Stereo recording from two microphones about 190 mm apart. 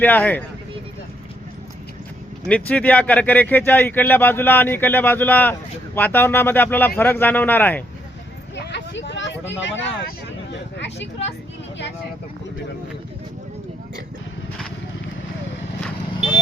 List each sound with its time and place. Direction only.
0.0 s speech: 10° left (ahead or behind)
2.5 s speech: 5° left (ahead or behind)
8.5 s a sound: 65° left (ahead or behind)